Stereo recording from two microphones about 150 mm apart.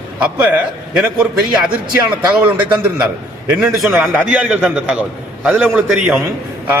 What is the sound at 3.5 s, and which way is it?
A man's voice, 5° right (ahead or behind).